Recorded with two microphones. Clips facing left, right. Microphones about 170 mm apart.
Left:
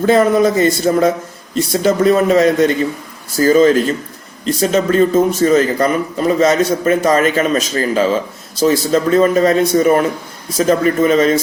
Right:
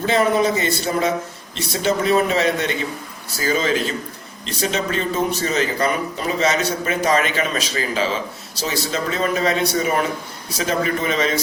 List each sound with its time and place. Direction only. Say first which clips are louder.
0.0 s speech: left 6 dB; 50° left (ahead or behind)